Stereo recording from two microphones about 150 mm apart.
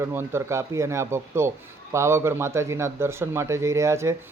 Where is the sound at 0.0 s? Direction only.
15° right (ahead or behind).